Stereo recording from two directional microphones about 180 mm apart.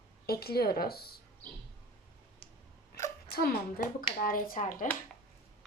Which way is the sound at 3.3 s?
55° left (ahead or behind).